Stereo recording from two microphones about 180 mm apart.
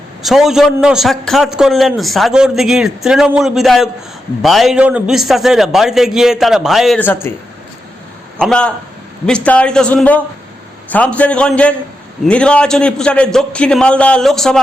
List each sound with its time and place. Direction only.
0.2 s a man's voice: centre (ahead or behind)
7.0 s a man's voice: 10° left (ahead or behind)
8.4 s a man's voice: 5° left (ahead or behind)